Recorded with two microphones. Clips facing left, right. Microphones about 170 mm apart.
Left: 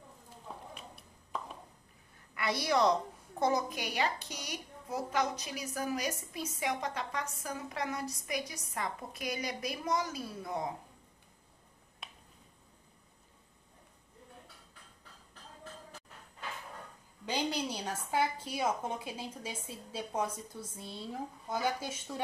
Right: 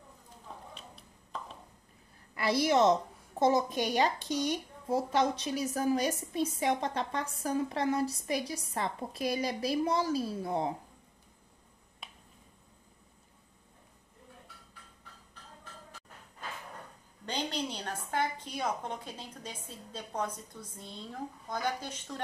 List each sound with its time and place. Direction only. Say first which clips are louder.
2.3 s a woman's voice: right 4 dB; 30° right (ahead or behind)
12.0 s finger snapping: even; centre (ahead or behind)
17.3 s a woman's voice: left 1 dB; 10° left (ahead or behind)